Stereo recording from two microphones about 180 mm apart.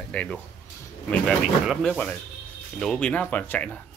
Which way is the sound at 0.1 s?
5° left (ahead or behind).